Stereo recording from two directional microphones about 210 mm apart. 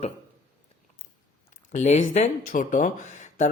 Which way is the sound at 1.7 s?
35° left (ahead or behind).